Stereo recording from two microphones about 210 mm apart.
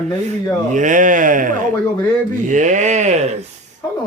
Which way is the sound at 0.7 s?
35° right (ahead or behind).